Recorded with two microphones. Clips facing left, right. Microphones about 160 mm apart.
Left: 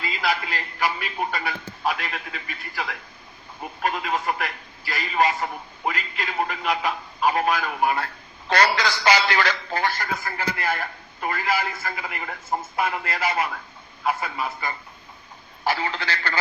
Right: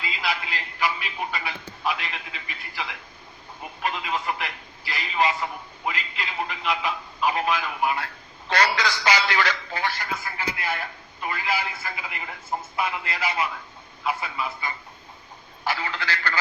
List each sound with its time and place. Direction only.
0.0 s a man's voice: 45° left (ahead or behind)
15.6 s speech: 35° left (ahead or behind)